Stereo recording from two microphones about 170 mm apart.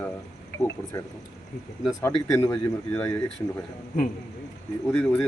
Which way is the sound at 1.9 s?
15° left (ahead or behind).